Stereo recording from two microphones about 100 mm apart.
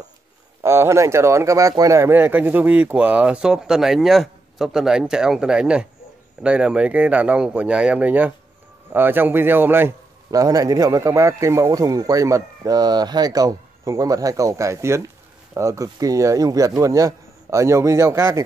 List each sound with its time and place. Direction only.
0.7 s a man's voice: 25° right (ahead or behind)
10.3 s speech: 35° right (ahead or behind)